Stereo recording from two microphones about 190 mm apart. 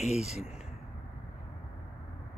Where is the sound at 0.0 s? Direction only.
35° left (ahead or behind).